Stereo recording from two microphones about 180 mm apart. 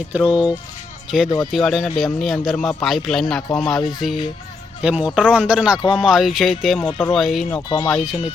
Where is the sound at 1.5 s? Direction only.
5° left (ahead or behind).